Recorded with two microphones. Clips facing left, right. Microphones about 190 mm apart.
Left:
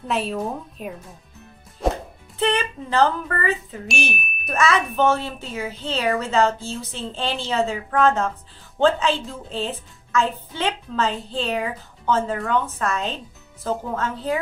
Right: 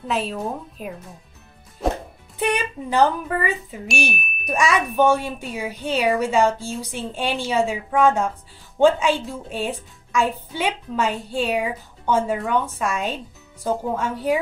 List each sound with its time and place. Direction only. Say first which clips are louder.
0.1 s speech: left 1 dB; centre (ahead or behind)
1.8 s music: even; centre (ahead or behind)
2.3 s a woman's voice: left 1 dB; 15° right (ahead or behind)